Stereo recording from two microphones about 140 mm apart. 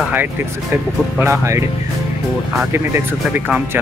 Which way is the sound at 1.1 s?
15° right (ahead or behind).